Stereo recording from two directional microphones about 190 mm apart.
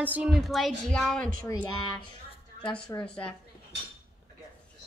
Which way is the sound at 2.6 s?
5° left (ahead or behind).